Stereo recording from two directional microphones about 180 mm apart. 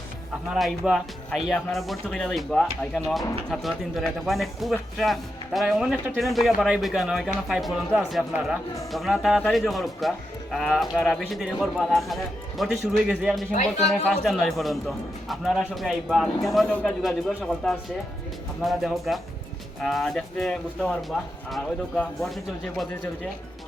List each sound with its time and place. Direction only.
0.5 s speech: centre (ahead or behind)
13.5 s speech: 45° left (ahead or behind)
13.8 s speech: centre (ahead or behind)